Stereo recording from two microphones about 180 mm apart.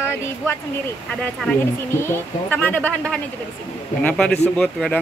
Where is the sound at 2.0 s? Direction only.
10° left (ahead or behind).